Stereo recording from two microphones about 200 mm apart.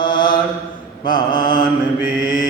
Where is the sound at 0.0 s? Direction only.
25° left (ahead or behind).